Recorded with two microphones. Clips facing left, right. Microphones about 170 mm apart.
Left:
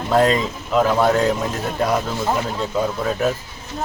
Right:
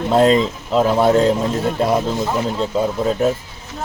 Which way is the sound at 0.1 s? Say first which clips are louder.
Right 3 dB; 25° right (ahead or behind).